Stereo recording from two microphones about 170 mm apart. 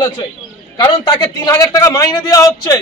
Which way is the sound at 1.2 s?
20° left (ahead or behind).